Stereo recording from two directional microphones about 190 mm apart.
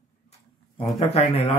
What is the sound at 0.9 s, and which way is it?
Speech, 30° left (ahead or behind).